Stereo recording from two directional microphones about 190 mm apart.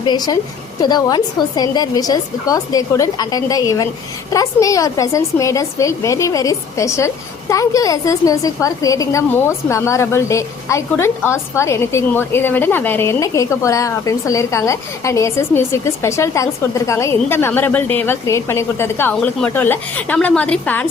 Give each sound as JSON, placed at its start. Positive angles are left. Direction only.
{"t": 0.0, "sound": "a woman's voice", "side_deg": 20}